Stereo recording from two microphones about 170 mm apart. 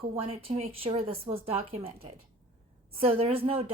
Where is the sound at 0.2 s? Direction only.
35° right (ahead or behind).